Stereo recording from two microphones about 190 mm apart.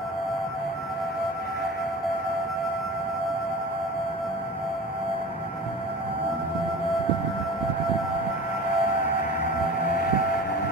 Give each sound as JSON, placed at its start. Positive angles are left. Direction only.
{"t": 9.4, "sound": "music", "side_deg": 50}